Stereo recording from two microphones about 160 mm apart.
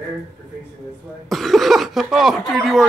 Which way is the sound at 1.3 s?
Centre (ahead or behind).